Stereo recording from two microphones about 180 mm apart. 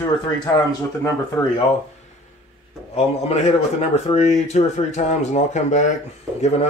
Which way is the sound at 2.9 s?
35° left (ahead or behind).